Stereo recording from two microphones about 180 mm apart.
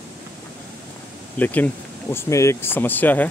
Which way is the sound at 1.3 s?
10° left (ahead or behind).